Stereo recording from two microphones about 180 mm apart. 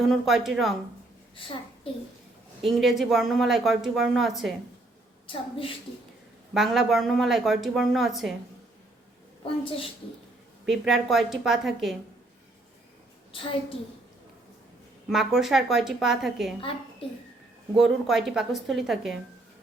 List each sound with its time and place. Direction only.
0.1 s speech: centre (ahead or behind)
2.6 s speech: centre (ahead or behind)
5.2 s a woman's voice: 30° left (ahead or behind)
6.5 s speech: centre (ahead or behind)
9.4 s a woman's voice: 30° left (ahead or behind)
10.7 s speech: centre (ahead or behind)
13.3 s a woman's voice: 30° left (ahead or behind)
15.1 s speech: centre (ahead or behind)
17.7 s speech: centre (ahead or behind)